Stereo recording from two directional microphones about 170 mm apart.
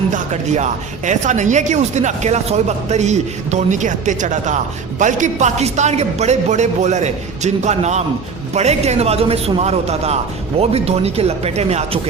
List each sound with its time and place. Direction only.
0.1 s a man's voice: 45° right (ahead or behind)